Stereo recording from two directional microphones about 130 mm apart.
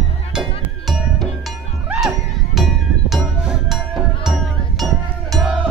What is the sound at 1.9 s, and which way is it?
Music, centre (ahead or behind).